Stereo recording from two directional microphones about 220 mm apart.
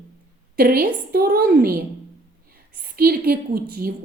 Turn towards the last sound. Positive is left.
turn(degrees=-45)  # may be behind; listen again after turning